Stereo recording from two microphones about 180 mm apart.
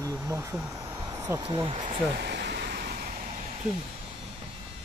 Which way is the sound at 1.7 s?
40° right (ahead or behind).